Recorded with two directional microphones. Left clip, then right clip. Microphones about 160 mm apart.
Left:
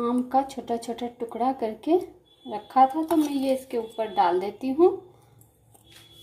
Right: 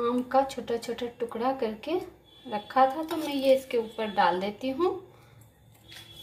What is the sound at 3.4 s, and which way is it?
A woman's voice, 40° left (ahead or behind).